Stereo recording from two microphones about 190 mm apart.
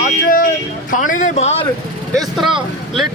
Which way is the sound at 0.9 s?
45° left (ahead or behind).